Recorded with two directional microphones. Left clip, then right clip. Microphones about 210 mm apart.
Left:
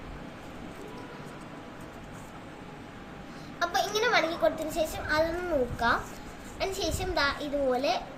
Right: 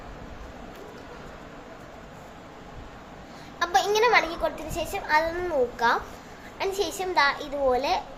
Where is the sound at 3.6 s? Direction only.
15° right (ahead or behind).